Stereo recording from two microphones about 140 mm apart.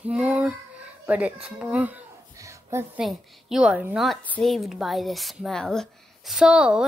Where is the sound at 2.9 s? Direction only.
5° right (ahead or behind).